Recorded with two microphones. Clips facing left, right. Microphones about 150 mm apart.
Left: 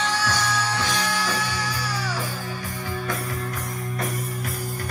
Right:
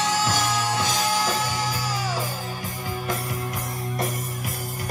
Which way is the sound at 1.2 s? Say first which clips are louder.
Right 2 dB; 45° right (ahead or behind).